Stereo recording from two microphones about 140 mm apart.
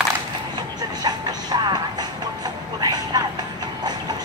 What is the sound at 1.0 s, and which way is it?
Vehicle, 30° right (ahead or behind).